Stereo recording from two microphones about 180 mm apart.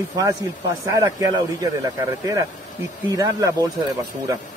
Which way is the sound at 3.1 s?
20° right (ahead or behind).